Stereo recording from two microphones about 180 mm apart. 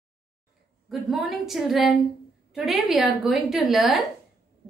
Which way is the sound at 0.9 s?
Centre (ahead or behind).